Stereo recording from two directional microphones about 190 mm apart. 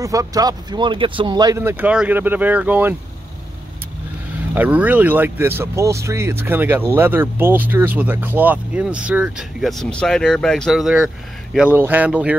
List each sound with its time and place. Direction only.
0.0 s speech: 15° right (ahead or behind)
4.6 s speech: 10° right (ahead or behind)